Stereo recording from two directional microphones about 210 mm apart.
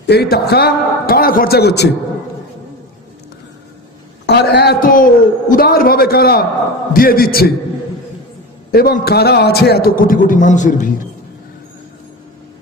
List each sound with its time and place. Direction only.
0.0 s a man's voice: 50° left (ahead or behind)
4.3 s a man's voice: 50° left (ahead or behind)
8.7 s a man's voice: 45° left (ahead or behind)